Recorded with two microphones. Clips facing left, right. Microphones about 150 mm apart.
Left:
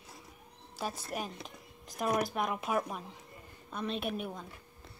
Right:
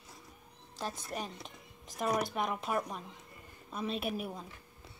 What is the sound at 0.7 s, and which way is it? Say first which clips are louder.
A woman's voice: left 2 dB; 10° left (ahead or behind).